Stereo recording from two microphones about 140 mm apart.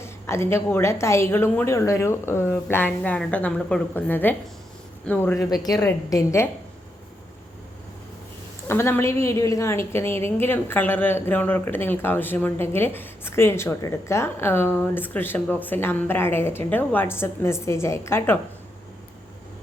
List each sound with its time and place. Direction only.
0.0 s a woman's voice: 20° left (ahead or behind)
8.6 s a woman's voice: 15° left (ahead or behind)